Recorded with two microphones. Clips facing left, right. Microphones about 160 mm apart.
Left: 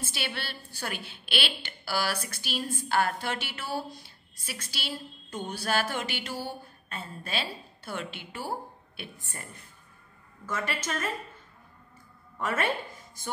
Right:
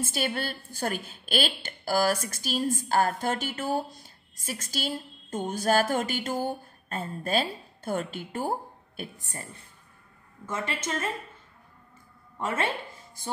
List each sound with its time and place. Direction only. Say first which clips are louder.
0.0 s a woman's voice: right 6 dB; 45° right (ahead or behind)
10.4 s a woman's voice: right 1 dB; 25° right (ahead or behind)
12.4 s speech: even; 25° right (ahead or behind)